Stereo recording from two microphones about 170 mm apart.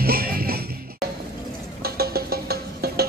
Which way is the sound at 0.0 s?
60° right (ahead or behind).